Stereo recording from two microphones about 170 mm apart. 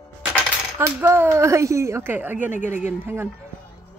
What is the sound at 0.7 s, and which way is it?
Speech, 15° right (ahead or behind).